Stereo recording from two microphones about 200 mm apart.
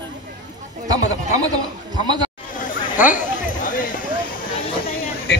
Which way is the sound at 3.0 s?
40° left (ahead or behind).